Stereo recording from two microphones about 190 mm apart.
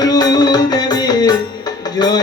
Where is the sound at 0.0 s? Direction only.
20° left (ahead or behind).